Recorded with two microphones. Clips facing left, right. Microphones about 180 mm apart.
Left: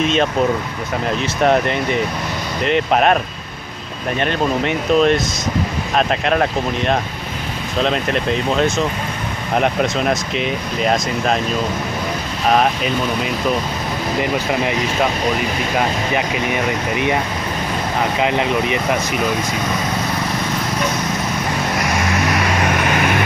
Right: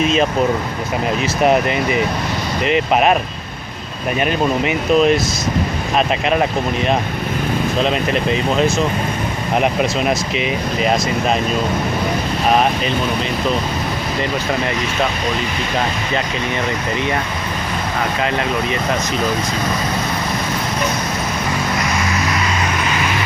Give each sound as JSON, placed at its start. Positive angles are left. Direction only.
{"t": 0.0, "sound": "speech", "side_deg": 0}
{"t": 1.4, "sound": "speech", "side_deg": -5}
{"t": 4.2, "sound": "speech", "side_deg": -5}
{"t": 7.8, "sound": "speech", "side_deg": 0}
{"t": 12.4, "sound": "speech", "side_deg": 0}
{"t": 16.9, "sound": "speech", "side_deg": 15}
{"t": 18.2, "sound": "speech", "side_deg": 15}
{"t": 22.1, "sound": "vehicle", "side_deg": 60}